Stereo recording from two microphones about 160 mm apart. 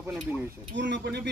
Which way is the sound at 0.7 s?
90° right.